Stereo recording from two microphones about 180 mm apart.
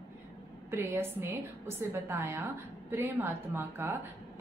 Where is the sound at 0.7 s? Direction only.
15° right (ahead or behind).